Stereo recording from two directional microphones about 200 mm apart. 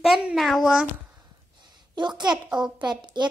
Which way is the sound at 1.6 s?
20° right (ahead or behind).